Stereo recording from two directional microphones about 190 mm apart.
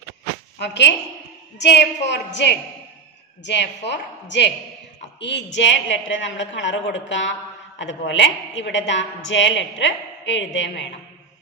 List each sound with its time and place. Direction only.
0.6 s a woman's voice: 65° left (ahead or behind); by 10.9 s 80° left